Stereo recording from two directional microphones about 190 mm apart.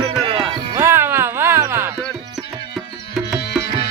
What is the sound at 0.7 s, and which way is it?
Music, 10° right (ahead or behind).